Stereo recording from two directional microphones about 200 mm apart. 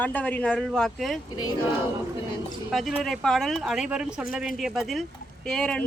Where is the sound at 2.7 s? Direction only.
Centre (ahead or behind).